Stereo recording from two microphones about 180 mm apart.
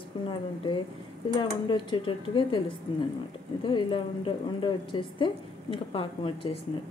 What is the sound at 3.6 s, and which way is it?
A woman's voice, 25° left (ahead or behind).